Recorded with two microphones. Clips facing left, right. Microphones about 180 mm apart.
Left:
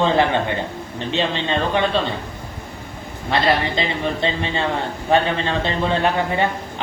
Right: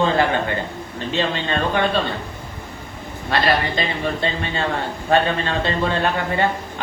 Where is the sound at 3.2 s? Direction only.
20° left (ahead or behind).